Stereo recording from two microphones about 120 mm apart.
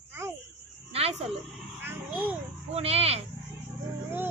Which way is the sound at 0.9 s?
55° right (ahead or behind).